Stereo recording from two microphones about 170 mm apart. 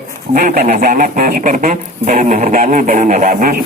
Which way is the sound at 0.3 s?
55° right (ahead or behind).